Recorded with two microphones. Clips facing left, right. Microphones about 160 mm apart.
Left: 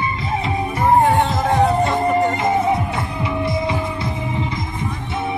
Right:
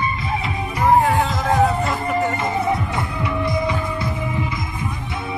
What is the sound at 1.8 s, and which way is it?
Music, 25° left (ahead or behind).